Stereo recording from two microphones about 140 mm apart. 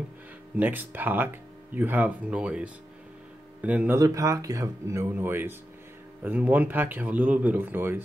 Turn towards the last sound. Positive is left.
turn(degrees=-15)  # may be behind; listen again after turning